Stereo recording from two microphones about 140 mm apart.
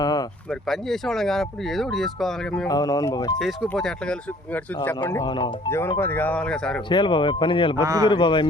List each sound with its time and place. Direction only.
0.0 s a sound: 25° left (ahead or behind)
0.7 s speech: centre (ahead or behind)
2.6 s speech: 25° left (ahead or behind)
3.8 s speech: 5° left (ahead or behind)
5.0 s speech: 20° left (ahead or behind)
6.9 s speech: 35° left (ahead or behind)
7.8 s speech: 25° right (ahead or behind)
8.0 s speech: 35° left (ahead or behind)